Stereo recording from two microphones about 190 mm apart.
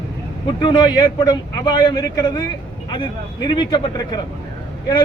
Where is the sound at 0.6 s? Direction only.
25° left (ahead or behind).